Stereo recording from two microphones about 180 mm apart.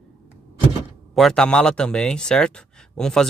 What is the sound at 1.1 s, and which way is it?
Speech, 5° left (ahead or behind).